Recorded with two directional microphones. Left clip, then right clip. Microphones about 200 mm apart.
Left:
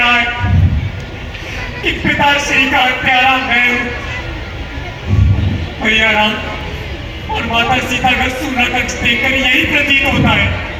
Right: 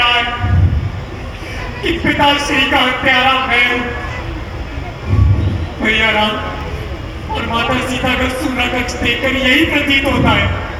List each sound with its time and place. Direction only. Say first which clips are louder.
1.8 s a man's voice: even; 60° right (ahead or behind)
5.8 s a man's voice: left 2 dB; 60° right (ahead or behind)
7.3 s a man's voice: left 3 dB; 60° right (ahead or behind)